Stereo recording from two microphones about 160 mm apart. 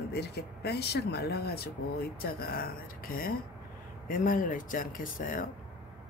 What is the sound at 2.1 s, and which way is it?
A woman's voice, 70° left (ahead or behind).